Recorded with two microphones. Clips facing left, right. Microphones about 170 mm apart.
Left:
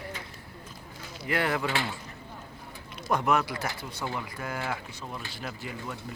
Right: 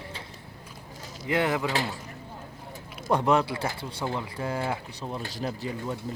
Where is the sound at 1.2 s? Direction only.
20° right (ahead or behind).